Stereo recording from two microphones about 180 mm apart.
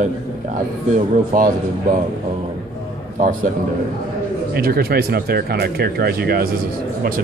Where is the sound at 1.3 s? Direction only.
50° right (ahead or behind).